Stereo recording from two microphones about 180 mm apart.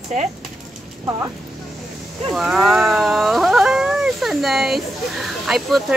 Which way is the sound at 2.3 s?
Centre (ahead or behind).